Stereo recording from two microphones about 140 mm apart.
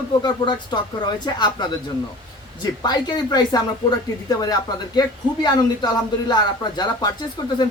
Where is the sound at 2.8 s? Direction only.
30° left (ahead or behind).